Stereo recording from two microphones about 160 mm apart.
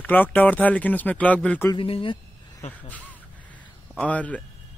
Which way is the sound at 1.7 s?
35° left (ahead or behind).